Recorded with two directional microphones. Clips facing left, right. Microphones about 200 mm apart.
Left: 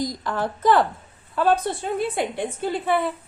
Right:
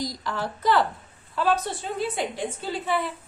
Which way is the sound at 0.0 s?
50° left (ahead or behind).